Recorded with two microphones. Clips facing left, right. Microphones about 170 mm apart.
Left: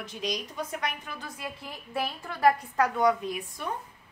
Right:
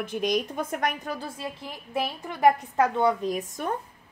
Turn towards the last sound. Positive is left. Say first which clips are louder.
# right 5 dB
turn(degrees=-40)  # may be behind; listen again after turning